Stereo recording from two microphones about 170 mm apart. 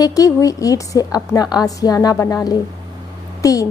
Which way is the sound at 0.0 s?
20° left (ahead or behind).